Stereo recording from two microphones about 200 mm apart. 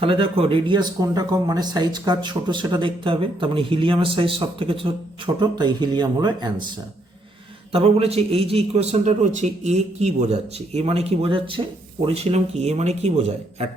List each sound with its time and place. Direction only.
0.0 s speech: 25° right (ahead or behind)
7.7 s a man's voice: 30° right (ahead or behind)